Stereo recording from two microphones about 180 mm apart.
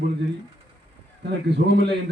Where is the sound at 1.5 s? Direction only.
70° right (ahead or behind).